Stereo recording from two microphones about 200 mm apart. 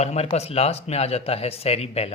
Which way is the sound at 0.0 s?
30° left (ahead or behind).